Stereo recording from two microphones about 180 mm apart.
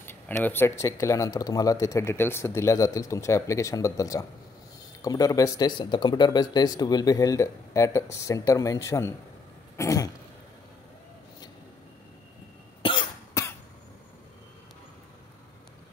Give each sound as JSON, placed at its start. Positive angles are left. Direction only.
{"t": 0.0, "sound": "speech", "side_deg": 10}
{"t": 9.8, "sound": "throat clearing", "side_deg": 20}
{"t": 12.8, "sound": "cough", "side_deg": 25}